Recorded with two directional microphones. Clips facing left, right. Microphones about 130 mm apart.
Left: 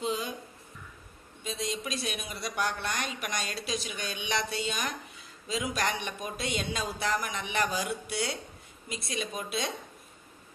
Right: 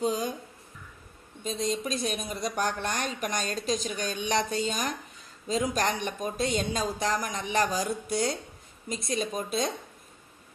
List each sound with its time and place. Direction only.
0.0 s a sound: 40° right (ahead or behind)
1.4 s a woman's voice: 45° right (ahead or behind)
6.2 s speech: 45° right (ahead or behind)